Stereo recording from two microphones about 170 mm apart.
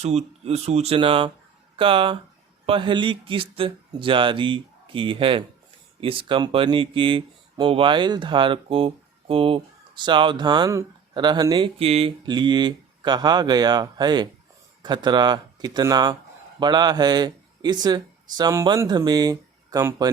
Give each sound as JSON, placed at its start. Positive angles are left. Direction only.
{"t": 0.0, "sound": "speech", "side_deg": -40}